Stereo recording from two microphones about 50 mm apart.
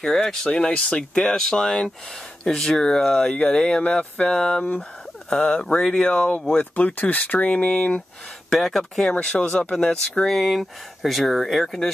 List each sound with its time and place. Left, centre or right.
0.0 s speech: centre
6.6 s speech: left
7.3 s speech: left
8.5 s speech: centre
9.1 s speech: left
10.2 s speech: centre